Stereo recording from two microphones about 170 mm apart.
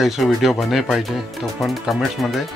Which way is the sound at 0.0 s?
Centre (ahead or behind).